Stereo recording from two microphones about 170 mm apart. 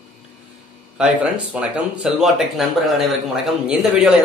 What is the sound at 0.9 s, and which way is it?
Speech, 5° right (ahead or behind).